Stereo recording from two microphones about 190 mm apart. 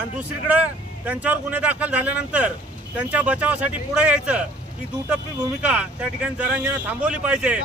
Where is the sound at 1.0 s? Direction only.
10° right (ahead or behind).